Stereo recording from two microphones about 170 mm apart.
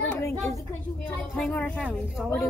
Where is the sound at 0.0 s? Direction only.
10° left (ahead or behind).